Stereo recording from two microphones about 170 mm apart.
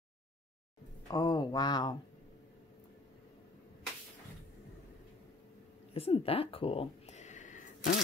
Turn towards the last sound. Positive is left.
turn(degrees=45)  # may be behind; listen again after turning